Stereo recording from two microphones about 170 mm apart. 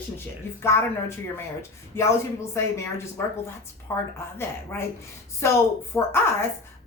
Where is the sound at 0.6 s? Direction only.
15° left (ahead or behind).